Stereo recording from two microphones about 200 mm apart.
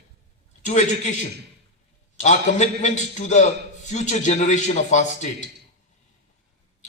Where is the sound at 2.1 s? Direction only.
35° left (ahead or behind).